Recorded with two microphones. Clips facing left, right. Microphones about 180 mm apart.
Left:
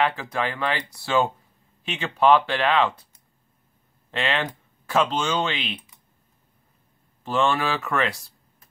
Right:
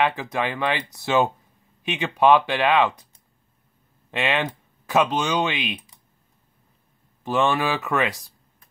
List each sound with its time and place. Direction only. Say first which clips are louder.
0.0 s speech: right 1 dB; 20° right (ahead or behind)
4.1 s speech: right 2 dB; 15° right (ahead or behind)
7.2 s speech: right 1 dB; 15° right (ahead or behind)